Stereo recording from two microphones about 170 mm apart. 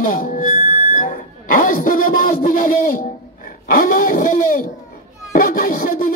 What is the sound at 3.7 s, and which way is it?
Speech, 55° left (ahead or behind).